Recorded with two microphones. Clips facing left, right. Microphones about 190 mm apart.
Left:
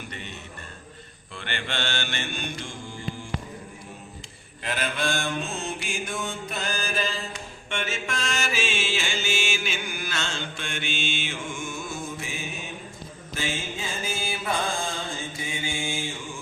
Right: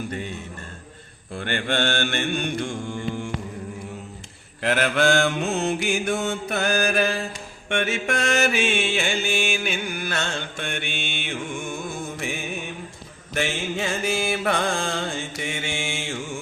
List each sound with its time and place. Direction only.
1.3 s mantra: 45° right (ahead or behind); by 3.2 s 65° right (ahead or behind)
4.6 s mantra: 70° right (ahead or behind)
13.3 s music: 70° right (ahead or behind)